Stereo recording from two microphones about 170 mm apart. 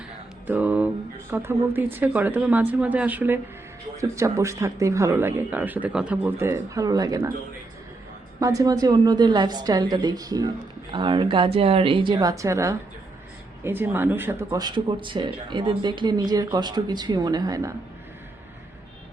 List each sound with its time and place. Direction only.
0.4 s a sound: 10° right (ahead or behind)
1.3 s speech: 10° right (ahead or behind)
8.4 s speech: 20° right (ahead or behind)
14.6 s speech: 30° right (ahead or behind)